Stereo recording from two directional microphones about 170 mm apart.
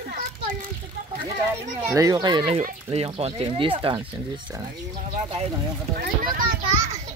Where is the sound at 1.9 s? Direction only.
20° right (ahead or behind).